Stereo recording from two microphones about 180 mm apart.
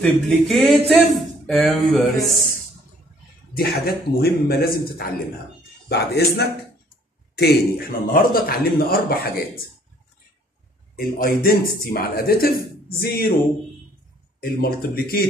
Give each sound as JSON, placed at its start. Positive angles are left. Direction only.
{"t": 0.0, "sound": "speech", "side_deg": 0}
{"t": 3.5, "sound": "speech", "side_deg": 60}
{"t": 11.0, "sound": "speech", "side_deg": 55}
{"t": 14.4, "sound": "speech", "side_deg": 55}